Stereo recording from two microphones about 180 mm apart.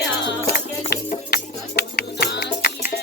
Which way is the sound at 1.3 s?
60° left (ahead or behind).